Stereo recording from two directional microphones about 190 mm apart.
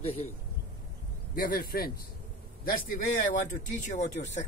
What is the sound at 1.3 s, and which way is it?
Speech, 50° left (ahead or behind).